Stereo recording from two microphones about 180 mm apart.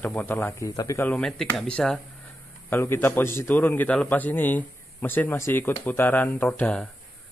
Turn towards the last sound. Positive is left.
turn(degrees=10)  # may be behind; listen again after turning